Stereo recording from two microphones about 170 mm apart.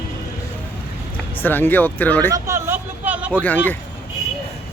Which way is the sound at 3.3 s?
10° left (ahead or behind).